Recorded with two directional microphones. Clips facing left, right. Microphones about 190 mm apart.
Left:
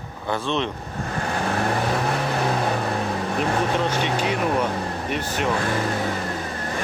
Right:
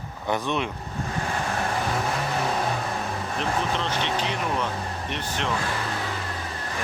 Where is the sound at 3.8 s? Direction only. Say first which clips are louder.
Left 4 dB; 10° left (ahead or behind).